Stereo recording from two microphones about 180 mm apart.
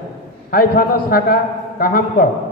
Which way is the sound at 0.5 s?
55° left (ahead or behind).